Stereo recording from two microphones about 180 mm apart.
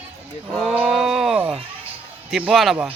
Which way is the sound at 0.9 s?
Centre (ahead or behind).